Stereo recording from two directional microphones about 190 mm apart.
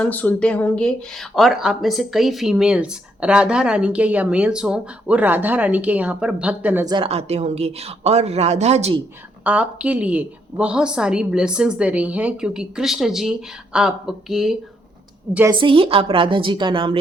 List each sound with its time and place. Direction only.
0.0 s speech: 10° left (ahead or behind); by 6.8 s 10° right (ahead or behind)
6.8 s speech: 25° right (ahead or behind)
9.4 s a woman's voice: 10° right (ahead or behind)
15.6 s a woman's voice: 30° right (ahead or behind)